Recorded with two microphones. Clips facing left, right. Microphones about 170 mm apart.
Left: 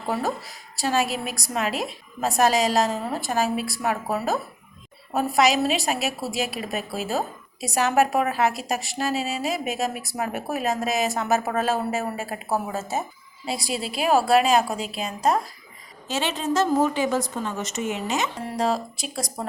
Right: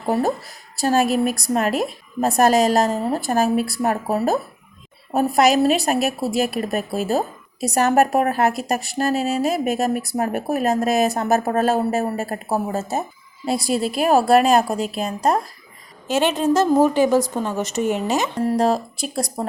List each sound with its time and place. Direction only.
0.1 s a woman's voice: 55° right (ahead or behind)
16.8 s a woman's voice: 40° right (ahead or behind)